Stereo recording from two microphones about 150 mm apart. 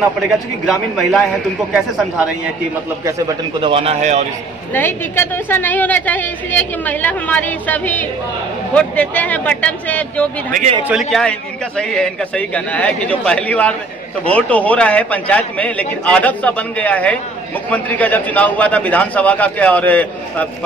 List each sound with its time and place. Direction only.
0.7 s a man's voice: centre (ahead or behind)
3.6 s speech: 40° right (ahead or behind)
4.7 s a woman's voice: 15° left (ahead or behind)